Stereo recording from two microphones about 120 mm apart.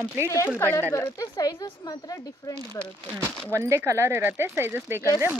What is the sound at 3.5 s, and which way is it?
Speech, 20° right (ahead or behind).